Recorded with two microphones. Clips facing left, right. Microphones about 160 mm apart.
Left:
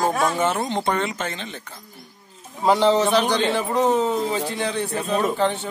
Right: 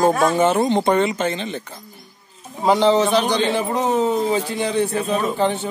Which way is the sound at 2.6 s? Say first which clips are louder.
Right 2 dB; centre (ahead or behind).